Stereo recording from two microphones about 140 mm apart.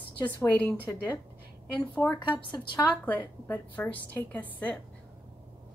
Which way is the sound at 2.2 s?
35° left (ahead or behind).